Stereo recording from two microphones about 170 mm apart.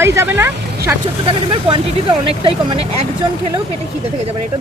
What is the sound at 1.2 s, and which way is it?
Speech, 30° right (ahead or behind).